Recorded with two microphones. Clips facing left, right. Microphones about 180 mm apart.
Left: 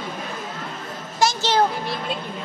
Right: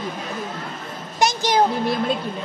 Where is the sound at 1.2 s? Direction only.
15° right (ahead or behind).